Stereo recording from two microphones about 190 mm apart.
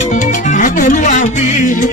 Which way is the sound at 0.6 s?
45° left (ahead or behind).